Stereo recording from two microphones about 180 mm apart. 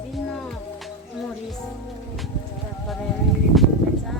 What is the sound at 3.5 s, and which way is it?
Speech, centre (ahead or behind).